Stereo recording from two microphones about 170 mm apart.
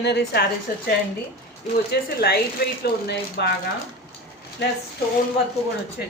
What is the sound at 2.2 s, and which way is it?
Speech, 65° left (ahead or behind).